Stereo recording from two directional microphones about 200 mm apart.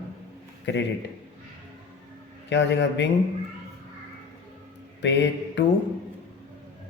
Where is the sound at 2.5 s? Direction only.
65° left (ahead or behind).